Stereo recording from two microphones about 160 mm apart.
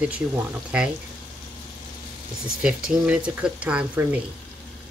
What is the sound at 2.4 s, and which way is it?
Speech, 5° right (ahead or behind).